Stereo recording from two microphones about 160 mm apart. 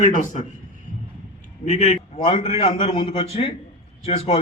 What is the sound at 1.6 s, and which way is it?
A man's voice, 50° left (ahead or behind).